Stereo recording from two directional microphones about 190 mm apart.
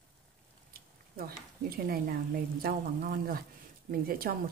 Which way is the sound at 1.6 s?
50° right (ahead or behind).